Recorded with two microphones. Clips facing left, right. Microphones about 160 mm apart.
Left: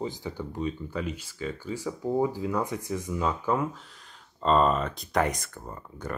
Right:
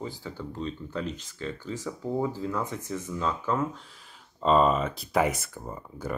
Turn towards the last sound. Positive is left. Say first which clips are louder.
# right 2 dB
turn(degrees=-5)  # may be behind; listen again after turning